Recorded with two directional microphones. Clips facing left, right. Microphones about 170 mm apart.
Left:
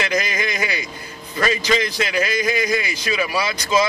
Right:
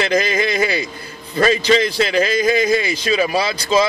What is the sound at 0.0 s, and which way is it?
Speech, 30° right (ahead or behind).